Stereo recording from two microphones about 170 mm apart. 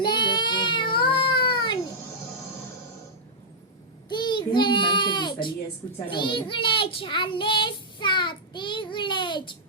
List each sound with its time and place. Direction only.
0.0 s child singing: 25° left (ahead or behind)
4.1 s child singing: 25° left (ahead or behind)
6.1 s a child's voice: 30° left (ahead or behind)